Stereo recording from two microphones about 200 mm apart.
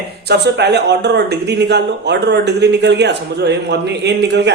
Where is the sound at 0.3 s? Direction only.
55° right (ahead or behind).